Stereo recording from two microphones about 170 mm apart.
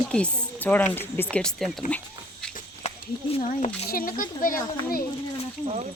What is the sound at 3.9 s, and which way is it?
Speech, 55° left (ahead or behind).